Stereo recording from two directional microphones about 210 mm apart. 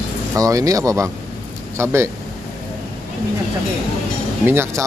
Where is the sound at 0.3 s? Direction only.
15° right (ahead or behind).